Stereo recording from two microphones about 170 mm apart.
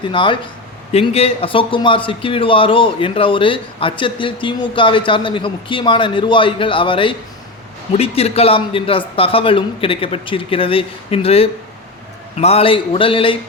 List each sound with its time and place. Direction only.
0.0 s a man's voice: 30° left (ahead or behind)